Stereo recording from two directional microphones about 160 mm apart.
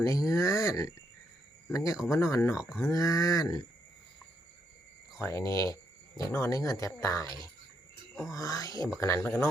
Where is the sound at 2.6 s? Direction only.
5° right (ahead or behind).